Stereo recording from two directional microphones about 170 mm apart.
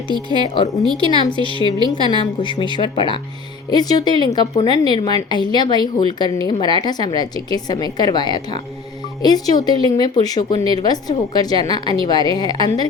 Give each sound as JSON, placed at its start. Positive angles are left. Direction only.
{"t": 0.4, "sound": "a woman's voice", "side_deg": 30}